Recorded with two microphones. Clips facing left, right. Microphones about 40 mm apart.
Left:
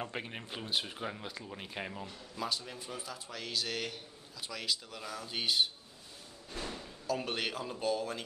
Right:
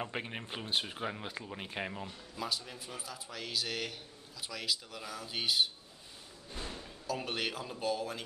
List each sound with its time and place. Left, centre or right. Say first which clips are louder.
0.0 s a man's voice: right 1 dB; centre
7.1 s a man's voice: left 1 dB; centre